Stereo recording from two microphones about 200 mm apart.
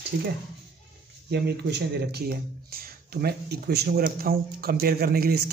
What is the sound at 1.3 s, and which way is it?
Speech, 55° right (ahead or behind).